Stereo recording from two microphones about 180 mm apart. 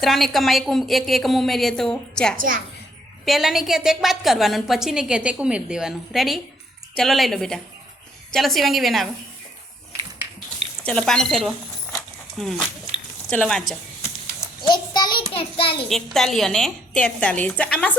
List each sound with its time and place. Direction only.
0.0 s a woman's voice: centre (ahead or behind)
10.8 s a woman's voice: 5° left (ahead or behind)
14.0 s a sound: 20° left (ahead or behind)
15.4 s child singing: 30° left (ahead or behind)
15.9 s a woman's voice: centre (ahead or behind)